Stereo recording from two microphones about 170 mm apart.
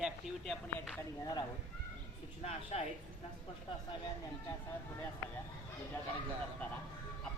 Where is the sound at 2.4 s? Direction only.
40° left (ahead or behind).